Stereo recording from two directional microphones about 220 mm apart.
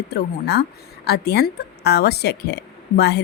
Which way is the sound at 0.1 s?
50° left (ahead or behind).